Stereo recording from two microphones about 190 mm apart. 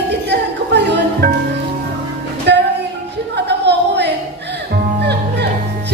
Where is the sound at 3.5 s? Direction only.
65° right (ahead or behind).